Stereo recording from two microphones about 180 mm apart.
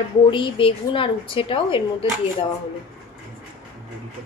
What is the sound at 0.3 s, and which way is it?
Speech, 30° left (ahead or behind).